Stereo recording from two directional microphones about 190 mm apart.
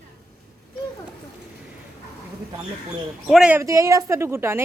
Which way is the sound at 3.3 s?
5° right (ahead or behind).